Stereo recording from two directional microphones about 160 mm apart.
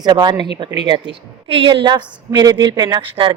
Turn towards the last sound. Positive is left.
turn(degrees=-35)  # may be behind; listen again after turning